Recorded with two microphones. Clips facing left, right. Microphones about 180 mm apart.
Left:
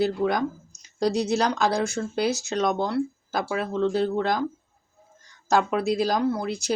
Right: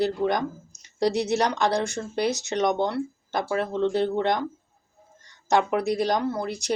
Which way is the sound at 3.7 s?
20° right (ahead or behind).